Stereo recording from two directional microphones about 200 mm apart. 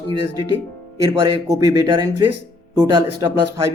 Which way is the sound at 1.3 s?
20° right (ahead or behind).